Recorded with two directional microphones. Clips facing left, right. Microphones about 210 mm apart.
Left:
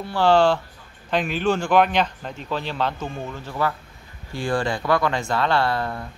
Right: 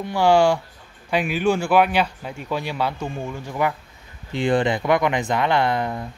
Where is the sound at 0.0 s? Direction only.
10° right (ahead or behind).